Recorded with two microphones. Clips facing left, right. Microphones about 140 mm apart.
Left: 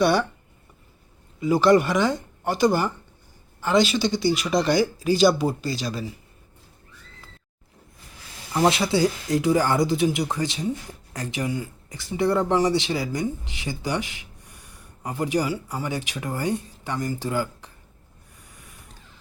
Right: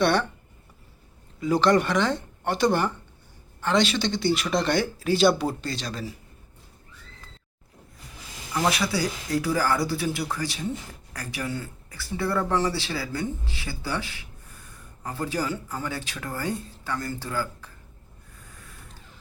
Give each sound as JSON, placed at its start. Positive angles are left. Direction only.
{"t": 0.0, "sound": "speech", "side_deg": 5}
{"t": 1.4, "sound": "speech", "side_deg": 5}
{"t": 8.5, "sound": "speech", "side_deg": 25}